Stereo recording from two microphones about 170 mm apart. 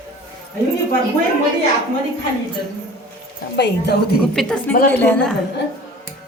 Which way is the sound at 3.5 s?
80° left.